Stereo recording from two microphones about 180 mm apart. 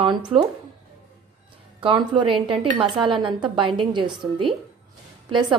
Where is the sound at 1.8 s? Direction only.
25° right (ahead or behind).